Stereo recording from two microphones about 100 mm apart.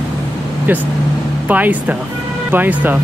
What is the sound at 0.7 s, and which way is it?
Speech, 20° right (ahead or behind).